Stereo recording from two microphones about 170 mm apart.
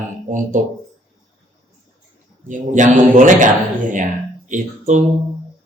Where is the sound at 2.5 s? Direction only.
50° right (ahead or behind).